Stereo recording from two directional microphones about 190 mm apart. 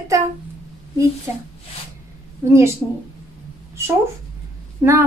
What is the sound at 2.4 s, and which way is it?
Speech, 15° right (ahead or behind).